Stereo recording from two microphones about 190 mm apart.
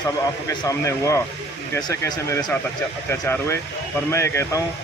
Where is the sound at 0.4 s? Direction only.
15° left (ahead or behind).